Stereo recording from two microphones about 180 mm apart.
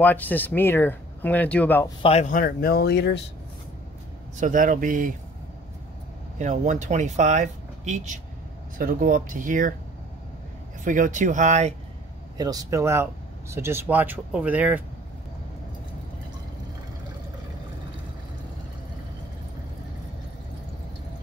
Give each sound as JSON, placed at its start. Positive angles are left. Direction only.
{"t": 0.0, "sound": "speech", "side_deg": 10}
{"t": 2.0, "sound": "speech", "side_deg": 40}
{"t": 4.4, "sound": "speech", "side_deg": -45}
{"t": 6.3, "sound": "speech", "side_deg": -40}
{"t": 10.8, "sound": "speech", "side_deg": -45}
{"t": 12.4, "sound": "speech", "side_deg": -20}